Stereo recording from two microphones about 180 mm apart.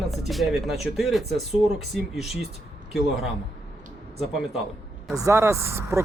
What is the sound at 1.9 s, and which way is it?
Speech, centre (ahead or behind).